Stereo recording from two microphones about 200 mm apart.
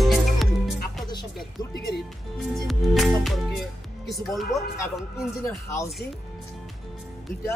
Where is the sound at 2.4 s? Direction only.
Centre (ahead or behind).